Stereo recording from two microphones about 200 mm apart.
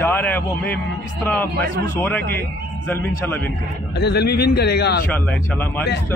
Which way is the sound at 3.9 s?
55° left (ahead or behind).